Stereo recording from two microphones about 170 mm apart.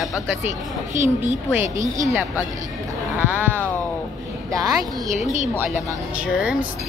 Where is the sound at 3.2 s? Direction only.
10° right (ahead or behind).